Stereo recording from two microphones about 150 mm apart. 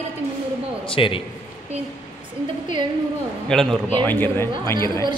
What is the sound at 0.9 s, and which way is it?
Speech, 35° left (ahead or behind).